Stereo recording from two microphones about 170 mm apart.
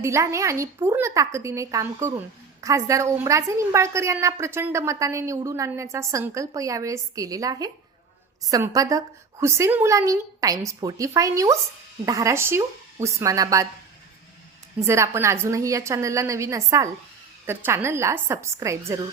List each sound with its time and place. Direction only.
0.0 s a woman's voice: 15° right (ahead or behind)
14.8 s a woman's voice: 15° right (ahead or behind)